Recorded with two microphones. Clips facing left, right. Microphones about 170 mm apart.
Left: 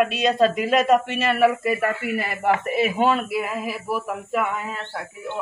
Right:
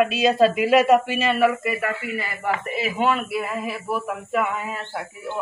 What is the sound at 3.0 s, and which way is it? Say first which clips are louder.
Speech: right 1 dB; 35° left (ahead or behind).